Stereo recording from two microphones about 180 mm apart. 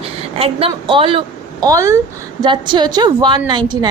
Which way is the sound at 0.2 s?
35° right (ahead or behind).